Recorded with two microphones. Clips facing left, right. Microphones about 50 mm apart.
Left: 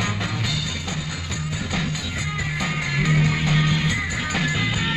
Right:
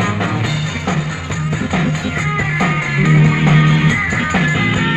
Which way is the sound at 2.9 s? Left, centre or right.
Right.